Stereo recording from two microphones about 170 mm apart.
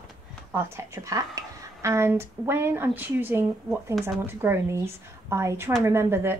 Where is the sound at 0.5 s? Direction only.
15° right (ahead or behind).